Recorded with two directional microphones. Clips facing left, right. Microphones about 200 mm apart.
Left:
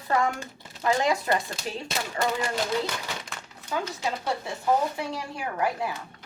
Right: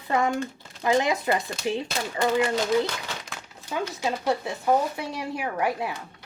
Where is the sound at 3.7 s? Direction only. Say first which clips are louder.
Right 1 dB; 25° right (ahead or behind).